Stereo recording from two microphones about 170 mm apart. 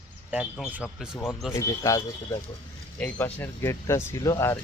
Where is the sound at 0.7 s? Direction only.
5° right (ahead or behind).